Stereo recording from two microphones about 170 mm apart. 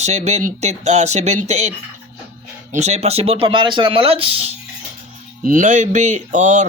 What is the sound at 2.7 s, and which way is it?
Speech, 40° right (ahead or behind).